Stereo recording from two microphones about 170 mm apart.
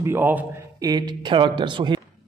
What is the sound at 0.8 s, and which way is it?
Speech, 25° right (ahead or behind).